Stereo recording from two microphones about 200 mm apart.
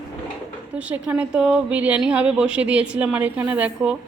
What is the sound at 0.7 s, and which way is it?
A woman's voice, 5° right (ahead or behind).